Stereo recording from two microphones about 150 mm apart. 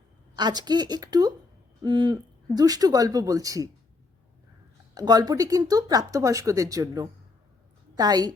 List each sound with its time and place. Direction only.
0.3 s speech: 30° right (ahead or behind)
1.8 s a sound: 30° right (ahead or behind)
2.6 s speech: 25° right (ahead or behind)
4.9 s speech: 25° right (ahead or behind)